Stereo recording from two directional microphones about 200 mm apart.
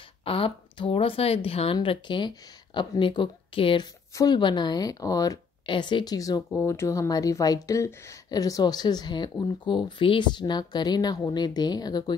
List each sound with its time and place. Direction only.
0.2 s speech: 25° left (ahead or behind)